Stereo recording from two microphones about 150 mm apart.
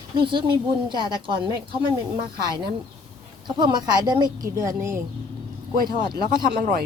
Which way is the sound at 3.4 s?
30° right (ahead or behind).